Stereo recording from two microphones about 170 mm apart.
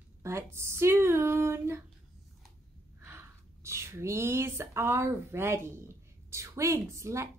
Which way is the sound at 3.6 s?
15° right (ahead or behind).